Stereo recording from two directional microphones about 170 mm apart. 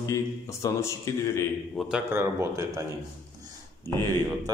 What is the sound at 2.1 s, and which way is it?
Speech, 15° right (ahead or behind).